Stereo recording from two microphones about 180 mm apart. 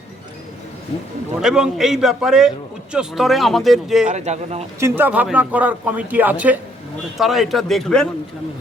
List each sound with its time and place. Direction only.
1.4 s speech: 5° right (ahead or behind)
4.1 s speech: 40° right (ahead or behind)
4.8 s a man's voice: 10° right (ahead or behind)